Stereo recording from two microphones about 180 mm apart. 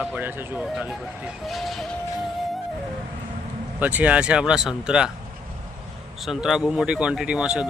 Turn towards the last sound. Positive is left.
turn(degrees=-5)  # may be behind; listen again after turning